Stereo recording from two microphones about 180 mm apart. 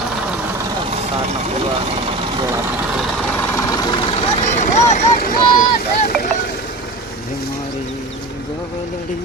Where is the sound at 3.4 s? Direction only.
15° left (ahead or behind).